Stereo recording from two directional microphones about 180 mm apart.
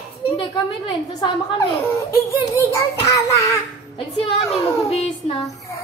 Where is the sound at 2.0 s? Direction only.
15° left (ahead or behind).